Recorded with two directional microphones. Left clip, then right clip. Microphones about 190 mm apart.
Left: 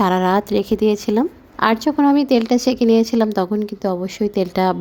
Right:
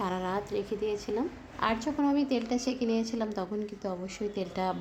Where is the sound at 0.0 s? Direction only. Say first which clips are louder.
Left 16 dB; 55° left (ahead or behind).